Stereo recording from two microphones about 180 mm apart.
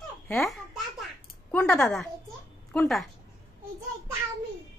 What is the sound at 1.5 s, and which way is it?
A woman's voice, 15° left (ahead or behind).